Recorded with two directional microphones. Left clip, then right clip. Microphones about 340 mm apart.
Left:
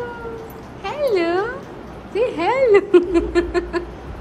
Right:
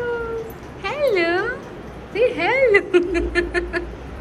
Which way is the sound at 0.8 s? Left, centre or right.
Centre.